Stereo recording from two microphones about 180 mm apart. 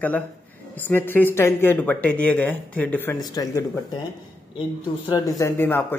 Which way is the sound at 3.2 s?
20° left (ahead or behind).